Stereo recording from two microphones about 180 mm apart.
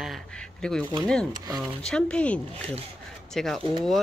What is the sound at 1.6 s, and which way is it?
Speech, 5° left (ahead or behind).